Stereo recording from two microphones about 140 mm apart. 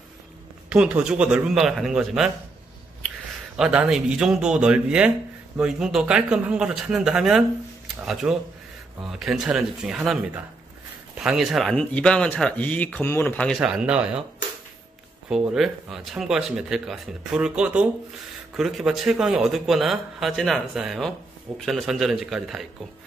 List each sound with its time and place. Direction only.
0.7 s speech: 10° right (ahead or behind)
3.5 s speech: 5° right (ahead or behind); by 13.6 s 10° left (ahead or behind)
13.6 s speech: 5° right (ahead or behind)
15.2 s speech: 5° right (ahead or behind)